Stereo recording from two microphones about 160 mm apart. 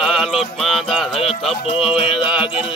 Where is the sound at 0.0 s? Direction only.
Centre (ahead or behind).